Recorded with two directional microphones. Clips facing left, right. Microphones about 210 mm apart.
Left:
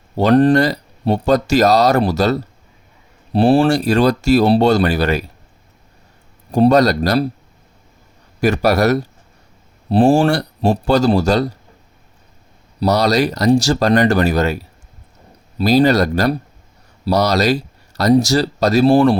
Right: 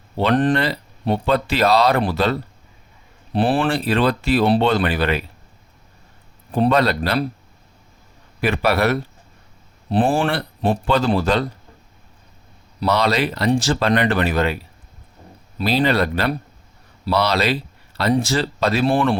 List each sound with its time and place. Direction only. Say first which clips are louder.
0.2 s speech: left 6 dB; 40° left (ahead or behind)
6.5 s speech: left 5 dB; 40° left (ahead or behind)
8.4 s speech: left 4 dB; 45° left (ahead or behind)
12.8 s speech: left 4 dB; 40° left (ahead or behind)